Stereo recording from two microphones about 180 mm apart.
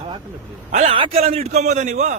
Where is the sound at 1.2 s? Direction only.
35° right (ahead or behind).